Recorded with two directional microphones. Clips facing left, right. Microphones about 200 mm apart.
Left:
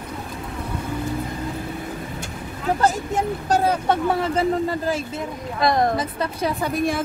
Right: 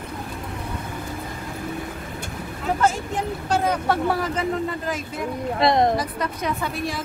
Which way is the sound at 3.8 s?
20° left (ahead or behind).